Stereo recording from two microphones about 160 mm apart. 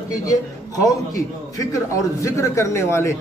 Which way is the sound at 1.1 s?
20° left (ahead or behind).